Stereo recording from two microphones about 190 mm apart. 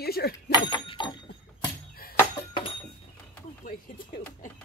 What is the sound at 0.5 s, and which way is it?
Speech, 25° left (ahead or behind).